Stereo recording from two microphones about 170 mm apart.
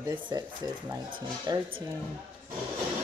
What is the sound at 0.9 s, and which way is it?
Speech, 25° right (ahead or behind).